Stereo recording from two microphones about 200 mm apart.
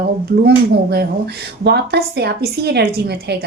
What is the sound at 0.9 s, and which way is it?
A woman's voice, 55° right (ahead or behind).